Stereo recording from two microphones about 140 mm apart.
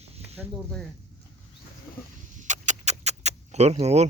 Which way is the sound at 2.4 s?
60° right (ahead or behind).